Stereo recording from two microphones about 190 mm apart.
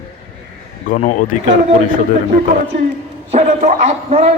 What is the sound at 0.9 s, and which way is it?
Speech, 40° left (ahead or behind).